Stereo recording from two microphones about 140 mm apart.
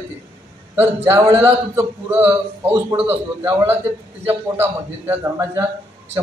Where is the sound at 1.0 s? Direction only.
20° right (ahead or behind).